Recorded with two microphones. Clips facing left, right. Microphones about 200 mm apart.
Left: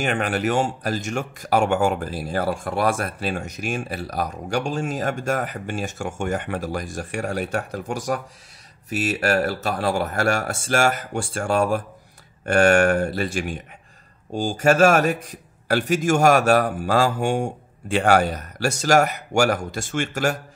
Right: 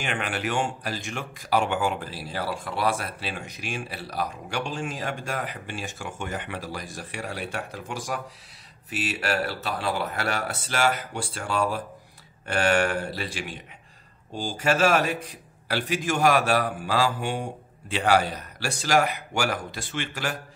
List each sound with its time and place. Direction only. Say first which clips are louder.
0.0 s speech: left 7 dB; 40° left (ahead or behind)